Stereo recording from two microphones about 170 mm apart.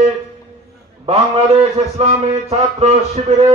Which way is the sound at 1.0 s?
35° right (ahead or behind).